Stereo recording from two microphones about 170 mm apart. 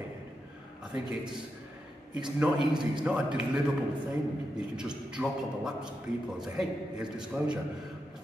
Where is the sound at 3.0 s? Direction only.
5° right (ahead or behind).